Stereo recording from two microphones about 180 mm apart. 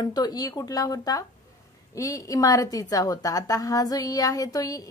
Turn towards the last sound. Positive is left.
turn(degrees=20)  # may be behind; listen again after turning